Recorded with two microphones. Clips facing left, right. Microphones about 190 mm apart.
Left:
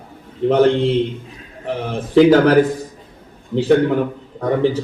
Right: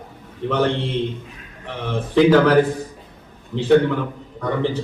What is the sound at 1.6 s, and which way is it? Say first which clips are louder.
Speech: left 3 dB; 40° left (ahead or behind).